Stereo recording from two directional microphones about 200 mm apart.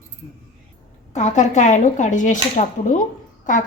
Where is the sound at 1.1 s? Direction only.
35° left (ahead or behind).